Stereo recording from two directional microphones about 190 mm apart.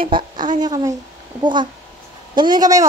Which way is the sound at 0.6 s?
20° right (ahead or behind).